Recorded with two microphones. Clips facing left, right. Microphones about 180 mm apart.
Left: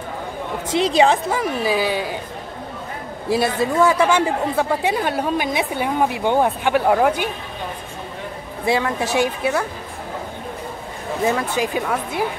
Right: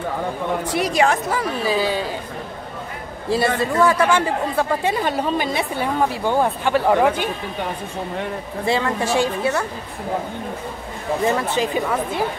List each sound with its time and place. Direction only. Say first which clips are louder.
0.7 s a woman's voice: left 4 dB; 25° left (ahead or behind)
1.3 s speech: left 1 dB; 10° left (ahead or behind)
3.3 s speech: even; 10° left (ahead or behind)
8.6 s speech: left 1 dB; 15° left (ahead or behind)
11.2 s speech: left 1 dB; 5° left (ahead or behind)